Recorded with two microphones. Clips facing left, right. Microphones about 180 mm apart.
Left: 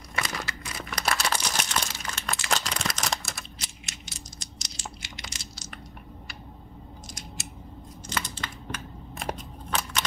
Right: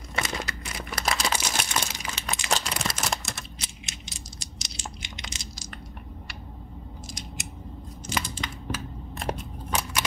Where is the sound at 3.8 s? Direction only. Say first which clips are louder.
Right 1 dB; 20° right (ahead or behind).